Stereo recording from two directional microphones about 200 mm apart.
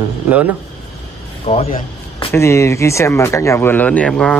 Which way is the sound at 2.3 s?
15° left (ahead or behind).